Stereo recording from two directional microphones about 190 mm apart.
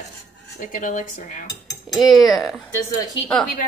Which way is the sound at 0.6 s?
45° left (ahead or behind).